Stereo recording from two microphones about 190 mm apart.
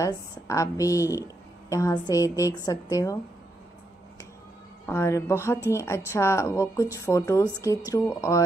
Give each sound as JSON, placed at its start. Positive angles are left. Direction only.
{"t": 0.0, "sound": "a woman's voice", "side_deg": 15}
{"t": 4.8, "sound": "a woman's voice", "side_deg": 15}